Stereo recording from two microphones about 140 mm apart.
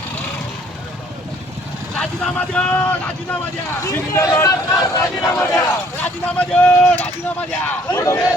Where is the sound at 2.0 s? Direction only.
5° left (ahead or behind).